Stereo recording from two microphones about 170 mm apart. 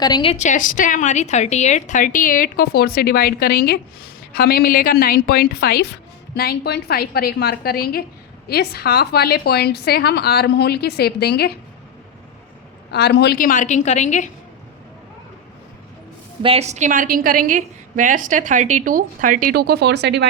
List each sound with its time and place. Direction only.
0.0 s a woman's voice: 25° left (ahead or behind)
0.3 s a woman's voice: 45° left (ahead or behind); by 11.5 s 70° left (ahead or behind)
12.9 s a woman's voice: 75° left (ahead or behind); by 14.3 s 45° left (ahead or behind)
16.4 s a woman's voice: 35° right (ahead or behind); by 20.2 s 90° right